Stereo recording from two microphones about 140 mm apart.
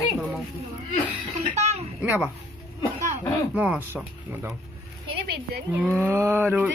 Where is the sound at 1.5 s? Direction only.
55° right (ahead or behind).